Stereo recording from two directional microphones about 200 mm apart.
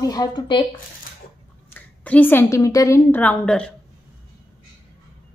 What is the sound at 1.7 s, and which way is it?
A woman's voice, 10° left (ahead or behind).